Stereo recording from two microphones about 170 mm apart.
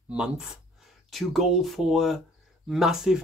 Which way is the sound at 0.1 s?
5° right (ahead or behind).